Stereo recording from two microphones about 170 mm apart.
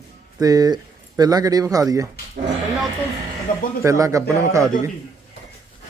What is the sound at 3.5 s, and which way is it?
Speech, 55° left (ahead or behind).